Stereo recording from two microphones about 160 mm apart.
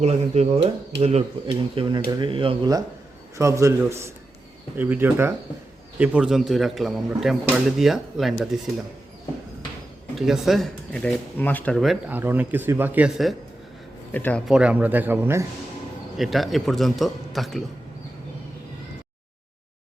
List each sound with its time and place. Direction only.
0.0 s a man's voice: 45° right (ahead or behind); by 8.4 s centre (ahead or behind)
10.2 s a man's voice: centre (ahead or behind)
12.1 s speech: 10° right (ahead or behind)
14.1 s speech: 10° left (ahead or behind)
14.4 s speech: 5° right (ahead or behind)
16.1 s a man's voice: centre (ahead or behind)